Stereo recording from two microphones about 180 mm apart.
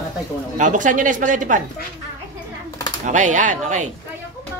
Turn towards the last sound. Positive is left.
turn(degrees=-45)  # may be behind; listen again after turning